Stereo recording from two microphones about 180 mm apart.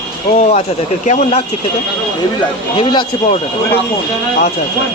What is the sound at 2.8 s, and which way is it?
Speech, 30° left (ahead or behind).